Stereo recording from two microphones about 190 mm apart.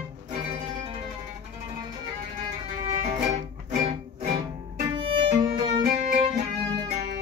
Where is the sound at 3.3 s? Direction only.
40° right (ahead or behind).